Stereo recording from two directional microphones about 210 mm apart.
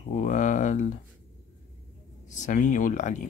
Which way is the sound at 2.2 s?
35° left (ahead or behind).